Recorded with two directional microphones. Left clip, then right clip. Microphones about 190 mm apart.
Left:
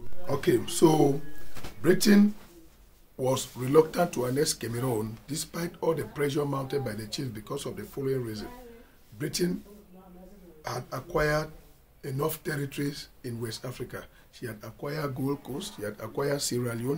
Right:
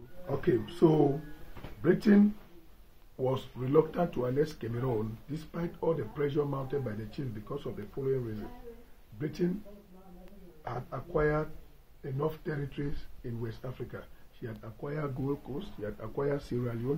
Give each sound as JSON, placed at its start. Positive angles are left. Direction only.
{"t": 0.3, "sound": "speech", "side_deg": 10}
{"t": 9.2, "sound": "speech", "side_deg": 15}
{"t": 10.6, "sound": "speech", "side_deg": 15}